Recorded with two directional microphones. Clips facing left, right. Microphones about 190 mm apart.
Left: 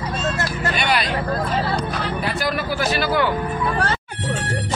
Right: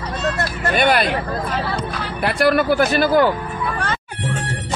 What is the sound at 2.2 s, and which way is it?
Speech, 60° right (ahead or behind).